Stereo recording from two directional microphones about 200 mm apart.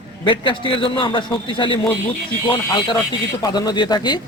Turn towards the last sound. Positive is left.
turn(degrees=20)  # may be behind; listen again after turning